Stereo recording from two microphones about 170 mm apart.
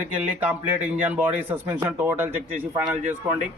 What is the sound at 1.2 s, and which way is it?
A man's voice, 10° right (ahead or behind).